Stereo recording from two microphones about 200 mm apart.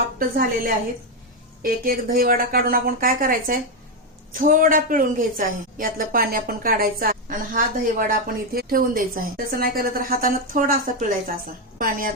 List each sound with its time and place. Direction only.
0.2 s a woman's voice: 45° right (ahead or behind)